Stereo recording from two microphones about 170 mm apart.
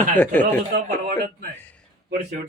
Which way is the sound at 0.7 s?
70° right (ahead or behind).